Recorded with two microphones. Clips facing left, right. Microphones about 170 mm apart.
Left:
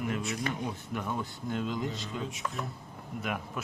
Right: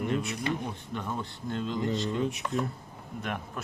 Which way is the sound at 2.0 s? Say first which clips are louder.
Right 8 dB; 65° right (ahead or behind).